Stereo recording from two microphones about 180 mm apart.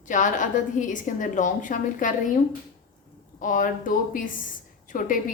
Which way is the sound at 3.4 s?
45° left (ahead or behind).